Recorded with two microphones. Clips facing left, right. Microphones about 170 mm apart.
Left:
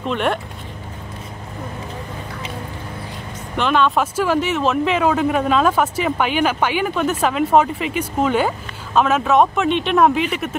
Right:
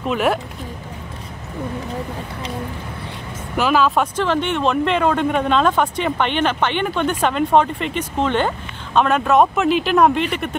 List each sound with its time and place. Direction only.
0.0 s speech: 5° right (ahead or behind)
3.5 s speech: 5° right (ahead or behind)